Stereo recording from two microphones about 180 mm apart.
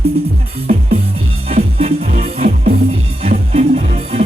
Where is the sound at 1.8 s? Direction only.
35° right (ahead or behind).